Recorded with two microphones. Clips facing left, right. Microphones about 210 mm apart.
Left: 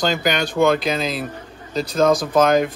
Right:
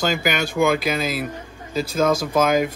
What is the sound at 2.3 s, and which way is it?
Speech, 5° right (ahead or behind).